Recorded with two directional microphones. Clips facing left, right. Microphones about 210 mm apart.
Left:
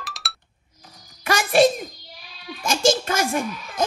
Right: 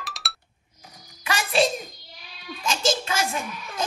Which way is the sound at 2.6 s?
45° left (ahead or behind).